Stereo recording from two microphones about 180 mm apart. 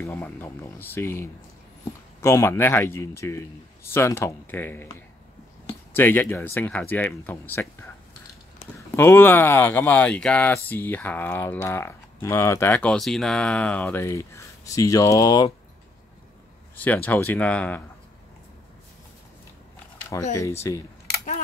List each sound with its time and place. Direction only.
0.0 s speech: 10° left (ahead or behind)
5.9 s speech: 10° left (ahead or behind)
16.7 s speech: 10° left (ahead or behind)
20.3 s speech: 15° left (ahead or behind)